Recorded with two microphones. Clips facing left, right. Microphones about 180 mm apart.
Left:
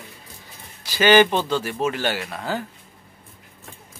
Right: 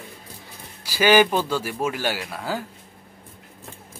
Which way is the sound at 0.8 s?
10° right (ahead or behind).